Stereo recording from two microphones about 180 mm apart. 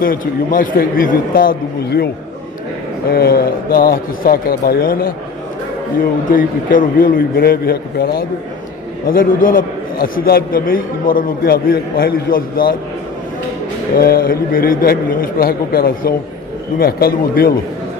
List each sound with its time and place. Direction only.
0.0 s a man's voice: 50° left (ahead or behind)
3.1 s a man's voice: 55° left (ahead or behind)
6.3 s a man's voice: 50° left (ahead or behind)
13.9 s a man's voice: 55° left (ahead or behind)